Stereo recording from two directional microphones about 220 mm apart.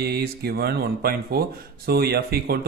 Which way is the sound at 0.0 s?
45° right (ahead or behind).